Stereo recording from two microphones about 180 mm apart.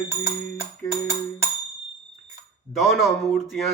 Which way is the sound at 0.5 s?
15° right (ahead or behind).